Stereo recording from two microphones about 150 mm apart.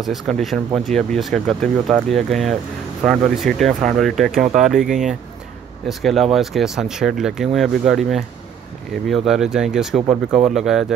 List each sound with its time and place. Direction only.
0.0 s speech: centre (ahead or behind)
10.0 s speech: 45° right (ahead or behind)
10.5 s speech: centre (ahead or behind)